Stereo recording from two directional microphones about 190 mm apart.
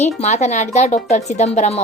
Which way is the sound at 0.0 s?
35° left (ahead or behind).